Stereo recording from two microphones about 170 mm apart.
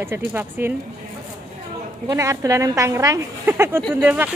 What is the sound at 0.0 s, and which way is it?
Speech, 15° right (ahead or behind).